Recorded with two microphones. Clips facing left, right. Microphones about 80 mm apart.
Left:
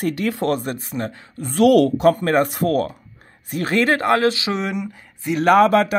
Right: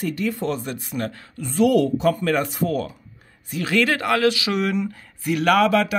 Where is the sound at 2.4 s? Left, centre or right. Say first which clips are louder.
Left 4 dB; left.